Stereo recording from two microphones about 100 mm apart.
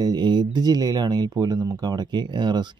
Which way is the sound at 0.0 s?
45° right (ahead or behind).